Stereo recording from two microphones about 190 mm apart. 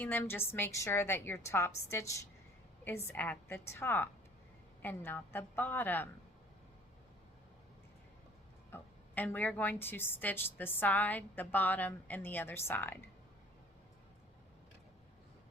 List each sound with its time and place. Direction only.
0.0 s a woman's voice: 10° left (ahead or behind)
8.7 s a woman's voice: 10° left (ahead or behind)